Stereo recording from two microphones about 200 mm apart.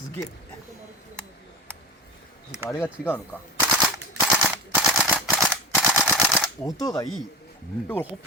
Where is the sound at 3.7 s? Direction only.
5° right (ahead or behind).